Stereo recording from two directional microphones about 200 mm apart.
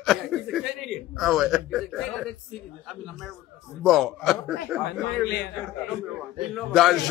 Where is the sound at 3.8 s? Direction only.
Centre (ahead or behind).